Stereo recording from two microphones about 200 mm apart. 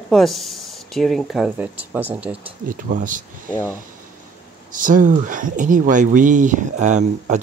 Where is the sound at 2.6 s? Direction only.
45° right (ahead or behind).